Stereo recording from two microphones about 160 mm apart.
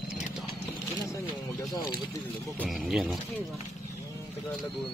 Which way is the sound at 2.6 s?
Centre (ahead or behind).